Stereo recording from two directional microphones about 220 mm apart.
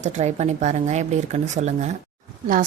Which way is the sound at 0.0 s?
30° right (ahead or behind).